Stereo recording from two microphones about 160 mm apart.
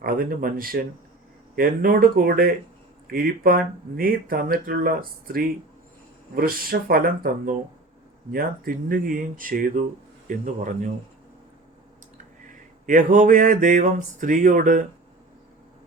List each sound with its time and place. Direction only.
0.0 s speech: 65° right (ahead or behind)
12.1 s mantra: 55° right (ahead or behind)